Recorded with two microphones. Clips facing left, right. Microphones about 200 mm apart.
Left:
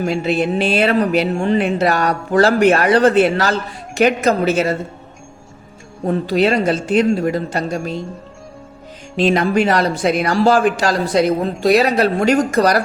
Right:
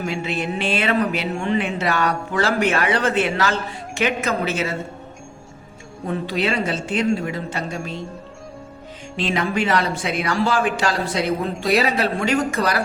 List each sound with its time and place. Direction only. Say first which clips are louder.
0.2 s speech: left 7 dB; 35° left (ahead or behind)
6.1 s speech: left 7 dB; 40° left (ahead or behind)
9.1 s speech: left 7 dB; 40° left (ahead or behind)